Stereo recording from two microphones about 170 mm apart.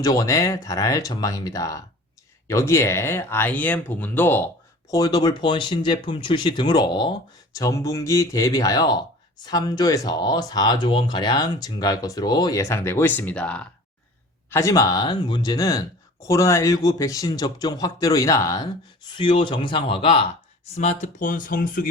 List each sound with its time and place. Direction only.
0.0 s speech: 20° left (ahead or behind)
4.9 s speech: 25° left (ahead or behind); by 13.7 s 5° left (ahead or behind)
14.5 s speech: 20° left (ahead or behind)
20.7 s speech: 45° left (ahead or behind)